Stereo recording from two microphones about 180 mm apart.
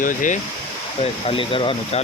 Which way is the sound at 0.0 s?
45° left (ahead or behind).